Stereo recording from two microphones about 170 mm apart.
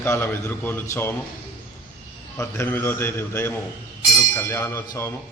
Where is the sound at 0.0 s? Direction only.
15° left (ahead or behind).